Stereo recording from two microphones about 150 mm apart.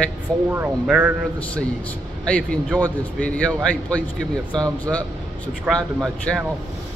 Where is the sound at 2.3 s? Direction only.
5° left (ahead or behind).